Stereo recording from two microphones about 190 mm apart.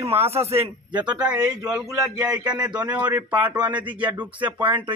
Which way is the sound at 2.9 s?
20° right (ahead or behind).